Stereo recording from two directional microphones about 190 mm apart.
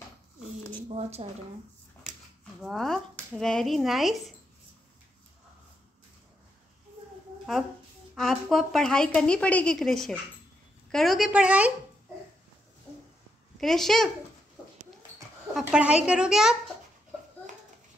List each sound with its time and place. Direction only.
0.8 s speech: 35° right (ahead or behind)
2.6 s a woman's voice: centre (ahead or behind)
8.2 s a woman's voice: centre (ahead or behind)
13.6 s a woman's voice: centre (ahead or behind)
15.5 s a woman's voice: 5° right (ahead or behind)